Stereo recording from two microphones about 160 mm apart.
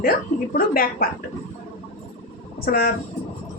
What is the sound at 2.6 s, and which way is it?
Speech, 70° left (ahead or behind).